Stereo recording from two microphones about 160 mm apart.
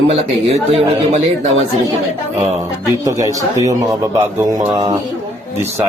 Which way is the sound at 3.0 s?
20° right (ahead or behind).